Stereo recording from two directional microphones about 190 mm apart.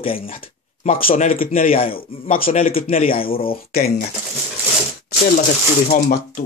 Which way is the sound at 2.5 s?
30° left (ahead or behind).